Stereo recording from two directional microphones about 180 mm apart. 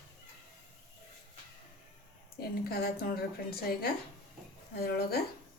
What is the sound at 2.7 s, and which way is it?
A woman's voice, 55° left (ahead or behind).